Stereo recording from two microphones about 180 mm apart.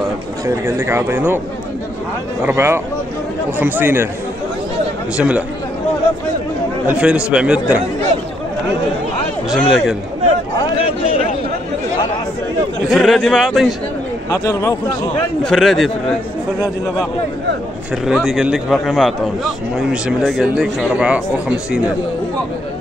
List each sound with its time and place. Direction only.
0.5 s speech: 15° right (ahead or behind)
2.4 s speech: 15° right (ahead or behind)
5.1 s a man's voice: 5° right (ahead or behind)
6.9 s a man's voice: 5° right (ahead or behind)
9.5 s a man's voice: centre (ahead or behind)
12.9 s a man's voice: centre (ahead or behind)
14.3 s speech: 20° left (ahead or behind)
15.4 s a man's voice: centre (ahead or behind)
18.0 s a man's voice: centre (ahead or behind)